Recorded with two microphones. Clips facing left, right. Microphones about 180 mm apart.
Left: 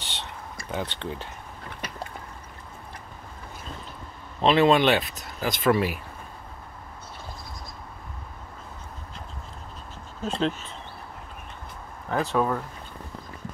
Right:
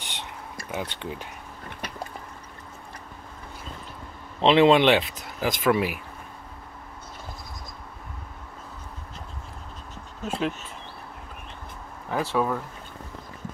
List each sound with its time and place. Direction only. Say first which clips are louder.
0.0 s a sound: even; 10° right (ahead or behind)
4.4 s speech: right 2 dB; 20° right (ahead or behind)
10.2 s speech: left 2 dB; 10° right (ahead or behind)
12.1 s speech: left 1 dB; 10° right (ahead or behind)